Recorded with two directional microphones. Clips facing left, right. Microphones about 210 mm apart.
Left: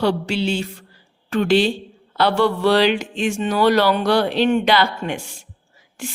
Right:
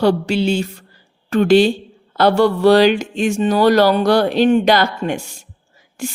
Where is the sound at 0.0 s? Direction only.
45° right (ahead or behind).